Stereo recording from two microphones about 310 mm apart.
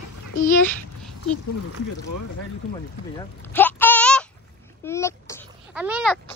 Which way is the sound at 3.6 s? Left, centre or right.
Centre.